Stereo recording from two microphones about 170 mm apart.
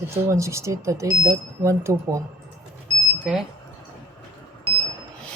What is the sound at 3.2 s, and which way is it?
Speech, 5° right (ahead or behind).